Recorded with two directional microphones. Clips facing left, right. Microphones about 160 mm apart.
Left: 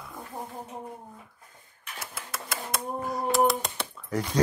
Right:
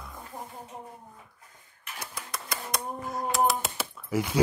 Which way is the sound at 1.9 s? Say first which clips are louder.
Left 1 dB; 5° left (ahead or behind).